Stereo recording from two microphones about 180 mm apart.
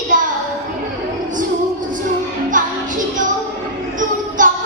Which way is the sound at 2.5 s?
45° right (ahead or behind).